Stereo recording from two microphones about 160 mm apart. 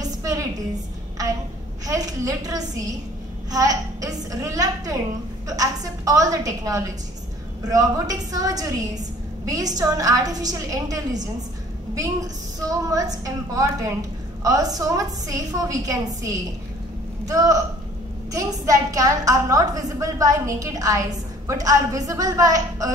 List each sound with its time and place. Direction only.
0.0 s a sound: 20° right (ahead or behind)
1.9 s a woman's voice: 20° right (ahead or behind)
12.6 s a woman's voice: 20° right (ahead or behind)